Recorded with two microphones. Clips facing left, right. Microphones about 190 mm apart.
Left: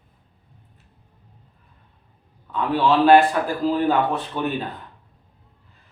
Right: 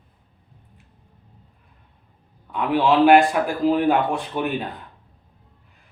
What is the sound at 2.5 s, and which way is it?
Speech, 15° right (ahead or behind).